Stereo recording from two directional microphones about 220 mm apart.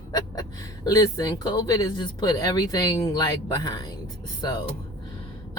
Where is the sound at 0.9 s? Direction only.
15° left (ahead or behind).